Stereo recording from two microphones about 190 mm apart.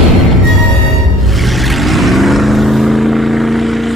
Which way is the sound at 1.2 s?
Centre (ahead or behind).